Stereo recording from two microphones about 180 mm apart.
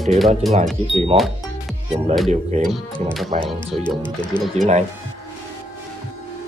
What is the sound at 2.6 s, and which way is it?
Speech, centre (ahead or behind).